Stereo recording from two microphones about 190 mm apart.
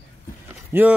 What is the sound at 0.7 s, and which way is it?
Speech, 10° right (ahead or behind).